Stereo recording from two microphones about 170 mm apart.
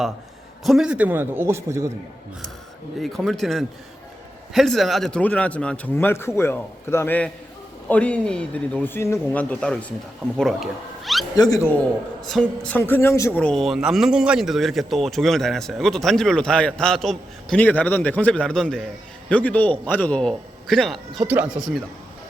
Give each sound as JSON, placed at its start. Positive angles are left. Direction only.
{"t": 0.6, "sound": "a man's voice", "side_deg": 0}
{"t": 3.0, "sound": "a man's voice", "side_deg": 0}
{"t": 11.3, "sound": "a man's voice", "side_deg": 20}
{"t": 12.2, "sound": "a man's voice", "side_deg": 5}